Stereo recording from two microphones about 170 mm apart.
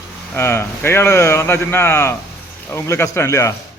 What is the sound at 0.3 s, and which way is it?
Speech, 15° left (ahead or behind).